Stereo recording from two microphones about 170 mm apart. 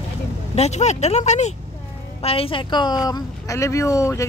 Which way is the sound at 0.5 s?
40° left (ahead or behind).